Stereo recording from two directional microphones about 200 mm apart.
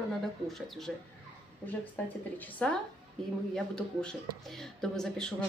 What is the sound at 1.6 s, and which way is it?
A woman's voice, 10° left (ahead or behind).